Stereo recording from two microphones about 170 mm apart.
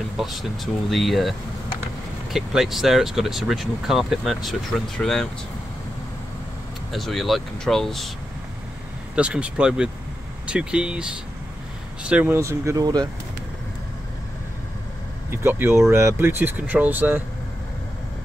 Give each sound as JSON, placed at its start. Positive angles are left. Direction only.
{"t": 0.2, "sound": "speech", "side_deg": 0}
{"t": 2.3, "sound": "speech", "side_deg": 0}
{"t": 6.9, "sound": "speech", "side_deg": 0}
{"t": 9.1, "sound": "speech", "side_deg": -5}
{"t": 15.2, "sound": "speech", "side_deg": -15}